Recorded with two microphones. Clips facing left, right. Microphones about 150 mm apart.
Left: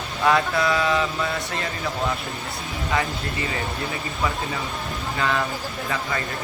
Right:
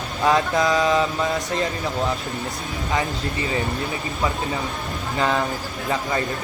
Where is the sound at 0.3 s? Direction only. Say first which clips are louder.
Right 1 dB; 20° right (ahead or behind).